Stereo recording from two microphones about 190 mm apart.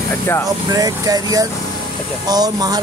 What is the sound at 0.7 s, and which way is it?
Speech, 20° right (ahead or behind).